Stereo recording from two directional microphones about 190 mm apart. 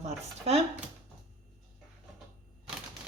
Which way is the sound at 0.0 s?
35° right (ahead or behind).